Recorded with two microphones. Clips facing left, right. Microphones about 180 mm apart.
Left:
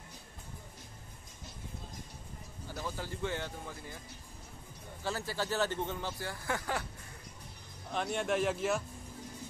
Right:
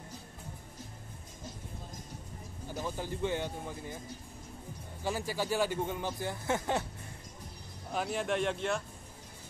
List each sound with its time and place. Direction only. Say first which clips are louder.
2.7 s speech: right 3 dB; 15° right (ahead or behind)
5.0 s speech: right 2 dB; 15° right (ahead or behind)
7.9 s speech: even; 5° right (ahead or behind)